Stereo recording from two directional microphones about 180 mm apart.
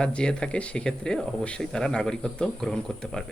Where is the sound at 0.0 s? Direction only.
5° left (ahead or behind).